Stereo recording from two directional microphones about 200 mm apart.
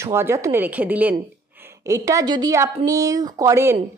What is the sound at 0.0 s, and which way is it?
A woman's voice, 15° right (ahead or behind).